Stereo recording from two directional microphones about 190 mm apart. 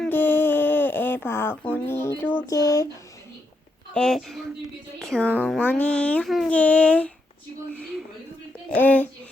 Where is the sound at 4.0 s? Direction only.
Centre (ahead or behind).